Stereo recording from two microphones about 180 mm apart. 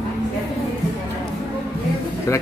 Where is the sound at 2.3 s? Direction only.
15° left (ahead or behind).